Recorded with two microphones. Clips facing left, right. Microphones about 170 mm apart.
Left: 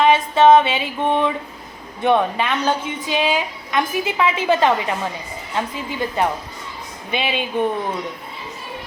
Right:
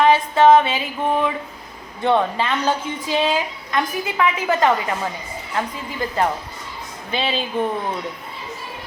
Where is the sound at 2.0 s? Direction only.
15° left (ahead or behind).